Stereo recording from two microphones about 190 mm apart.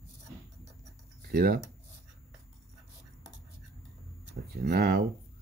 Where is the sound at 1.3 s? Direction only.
50° right (ahead or behind).